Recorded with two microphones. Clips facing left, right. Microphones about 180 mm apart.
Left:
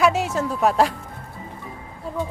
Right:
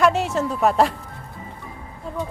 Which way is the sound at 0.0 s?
Centre (ahead or behind).